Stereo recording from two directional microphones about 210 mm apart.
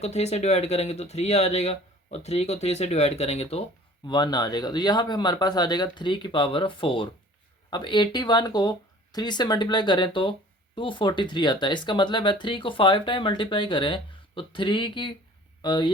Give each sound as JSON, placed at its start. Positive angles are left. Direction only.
{"t": 0.0, "sound": "speech", "side_deg": 30}